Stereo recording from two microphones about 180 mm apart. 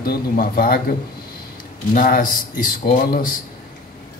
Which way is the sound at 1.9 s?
50° left (ahead or behind).